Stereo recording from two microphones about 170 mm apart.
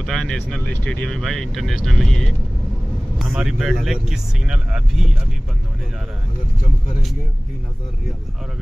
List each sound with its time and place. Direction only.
0.0 s speech: 5° left (ahead or behind)